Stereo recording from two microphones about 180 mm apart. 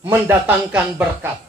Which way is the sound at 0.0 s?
10° right (ahead or behind).